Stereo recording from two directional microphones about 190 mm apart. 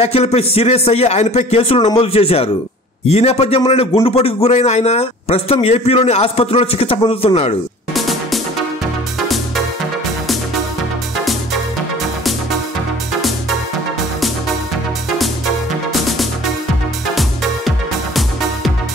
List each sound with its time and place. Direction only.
0.0 s a man's voice: 35° left (ahead or behind)
7.9 s music: centre (ahead or behind)
15.1 s music: centre (ahead or behind)